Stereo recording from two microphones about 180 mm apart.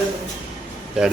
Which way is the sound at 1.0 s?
5° right (ahead or behind).